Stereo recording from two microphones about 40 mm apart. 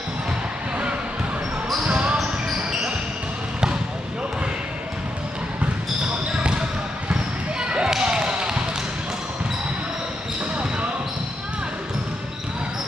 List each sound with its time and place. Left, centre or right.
1.9 s basketball bounce: right
7.6 s basketball bounce: right